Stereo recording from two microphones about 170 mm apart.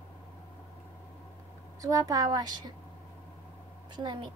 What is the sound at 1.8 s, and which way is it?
Speech, 20° right (ahead or behind).